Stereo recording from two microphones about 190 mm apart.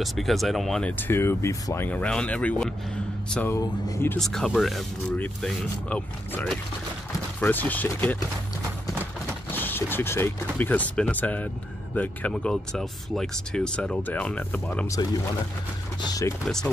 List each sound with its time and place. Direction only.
0.0 s speech: centre (ahead or behind)
4.2 s speech: centre (ahead or behind)
9.5 s speech: 10° left (ahead or behind)
16.1 s speech: 15° left (ahead or behind)
16.4 s speech: 5° left (ahead or behind)